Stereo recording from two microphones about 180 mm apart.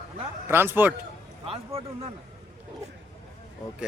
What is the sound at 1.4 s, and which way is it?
Speech, 35° right (ahead or behind).